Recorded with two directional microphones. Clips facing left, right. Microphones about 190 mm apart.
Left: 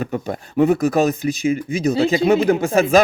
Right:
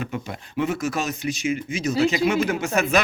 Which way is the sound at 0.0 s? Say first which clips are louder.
Left 6 dB; 40° left (ahead or behind).